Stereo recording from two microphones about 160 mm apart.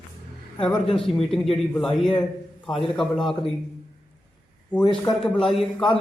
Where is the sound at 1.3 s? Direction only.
Centre (ahead or behind).